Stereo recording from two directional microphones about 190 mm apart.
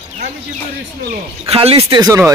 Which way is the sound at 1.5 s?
30° right (ahead or behind).